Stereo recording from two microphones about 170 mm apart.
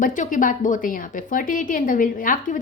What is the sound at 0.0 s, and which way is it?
Speech, 50° left (ahead or behind).